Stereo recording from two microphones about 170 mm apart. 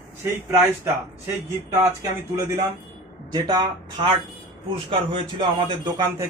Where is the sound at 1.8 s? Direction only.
20° right (ahead or behind).